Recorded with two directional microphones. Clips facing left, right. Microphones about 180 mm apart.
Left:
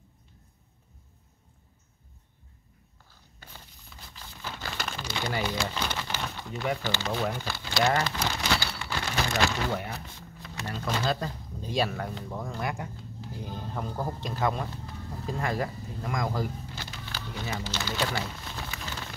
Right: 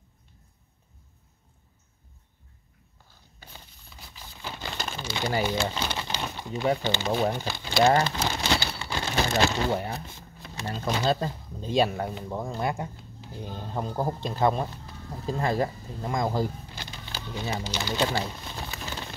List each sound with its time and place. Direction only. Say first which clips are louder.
4.1 s crumpling: right 1 dB; 15° right (ahead or behind)
6.5 s speech: right 5 dB; 30° right (ahead or behind)
16.7 s a sound: even; 20° right (ahead or behind)